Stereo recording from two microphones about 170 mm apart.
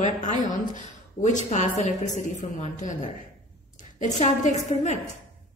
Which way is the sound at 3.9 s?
45° left (ahead or behind).